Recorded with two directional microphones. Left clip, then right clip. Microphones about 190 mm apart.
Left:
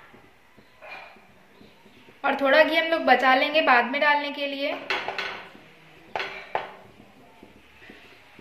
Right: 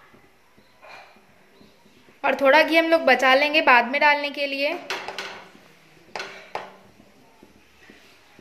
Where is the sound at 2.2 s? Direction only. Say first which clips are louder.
Right 2 dB; 55° right (ahead or behind).